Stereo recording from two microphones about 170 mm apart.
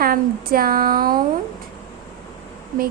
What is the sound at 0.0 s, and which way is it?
Speech, 60° right (ahead or behind).